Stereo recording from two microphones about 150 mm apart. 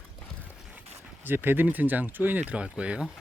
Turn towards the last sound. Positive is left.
turn(degrees=-5)  # may be behind; listen again after turning